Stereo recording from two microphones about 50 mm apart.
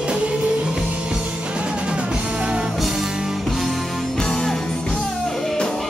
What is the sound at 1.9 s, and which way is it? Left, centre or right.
Music, centre.